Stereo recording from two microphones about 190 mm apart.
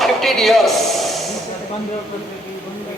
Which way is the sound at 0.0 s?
Centre (ahead or behind).